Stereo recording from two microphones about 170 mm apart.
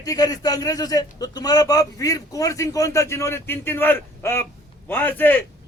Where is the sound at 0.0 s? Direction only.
20° left (ahead or behind).